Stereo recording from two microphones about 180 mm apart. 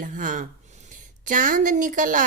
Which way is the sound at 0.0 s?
45° right (ahead or behind).